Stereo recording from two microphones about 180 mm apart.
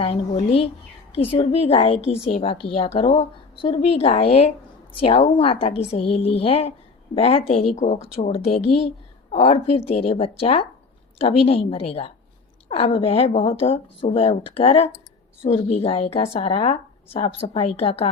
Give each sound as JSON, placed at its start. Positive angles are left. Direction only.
{"t": 0.0, "sound": "a woman's voice", "side_deg": 35}